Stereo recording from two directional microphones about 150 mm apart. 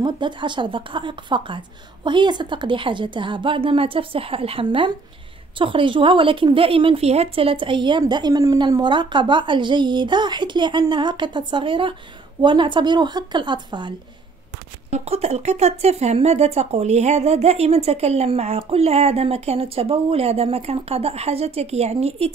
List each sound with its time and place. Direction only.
0.0 s speech: 30° right (ahead or behind)
14.9 s speech: 45° right (ahead or behind)